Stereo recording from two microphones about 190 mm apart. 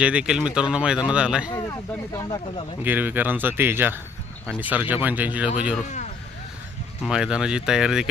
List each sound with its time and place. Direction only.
0.0 s speech: 5° right (ahead or behind)
2.1 s speech: 20° left (ahead or behind)
2.8 s speech: 10° right (ahead or behind)
7.0 s speech: 5° right (ahead or behind)